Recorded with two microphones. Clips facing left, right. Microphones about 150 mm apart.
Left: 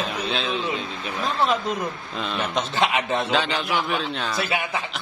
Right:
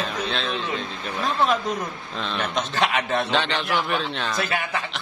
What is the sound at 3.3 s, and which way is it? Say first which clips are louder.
A man's voice: even; centre (ahead or behind).